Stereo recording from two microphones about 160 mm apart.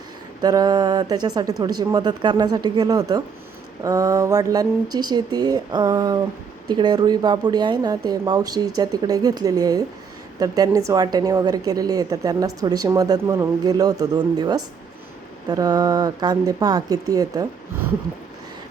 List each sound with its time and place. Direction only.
0.4 s a woman's voice: 25° right (ahead or behind)